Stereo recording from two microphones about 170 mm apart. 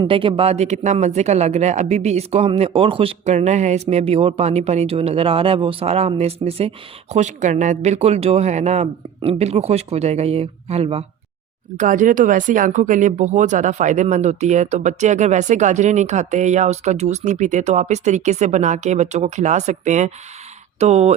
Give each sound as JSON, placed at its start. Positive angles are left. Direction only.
{"t": 0.0, "sound": "speech", "side_deg": -30}
{"t": 11.8, "sound": "speech", "side_deg": -50}